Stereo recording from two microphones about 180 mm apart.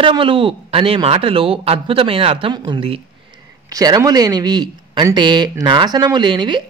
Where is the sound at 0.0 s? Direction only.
30° right (ahead or behind).